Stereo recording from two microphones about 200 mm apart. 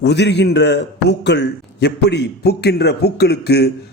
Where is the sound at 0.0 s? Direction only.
55° left (ahead or behind).